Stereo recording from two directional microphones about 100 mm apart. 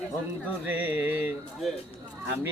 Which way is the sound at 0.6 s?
15° right (ahead or behind).